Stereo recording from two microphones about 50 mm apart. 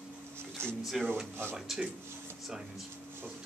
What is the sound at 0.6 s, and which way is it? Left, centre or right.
Speech, right.